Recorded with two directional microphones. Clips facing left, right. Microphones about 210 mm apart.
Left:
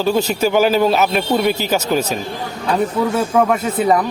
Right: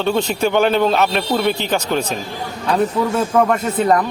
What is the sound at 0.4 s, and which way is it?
A man's voice, 5° left (ahead or behind).